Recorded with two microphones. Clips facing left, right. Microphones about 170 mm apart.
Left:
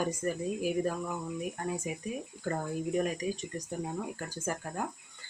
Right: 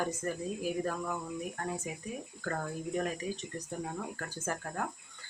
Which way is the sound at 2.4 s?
15° left (ahead or behind).